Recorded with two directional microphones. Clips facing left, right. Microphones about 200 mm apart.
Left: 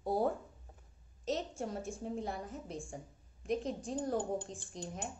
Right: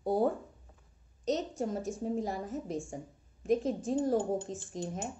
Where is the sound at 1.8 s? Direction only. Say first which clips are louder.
Right 6 dB; 40° right (ahead or behind).